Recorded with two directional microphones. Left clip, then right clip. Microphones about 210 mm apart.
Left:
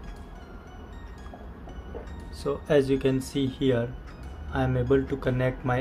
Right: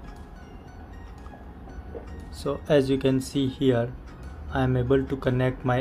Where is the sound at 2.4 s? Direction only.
20° right (ahead or behind).